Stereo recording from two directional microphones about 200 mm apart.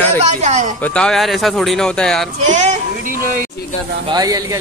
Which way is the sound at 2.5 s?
35° right (ahead or behind).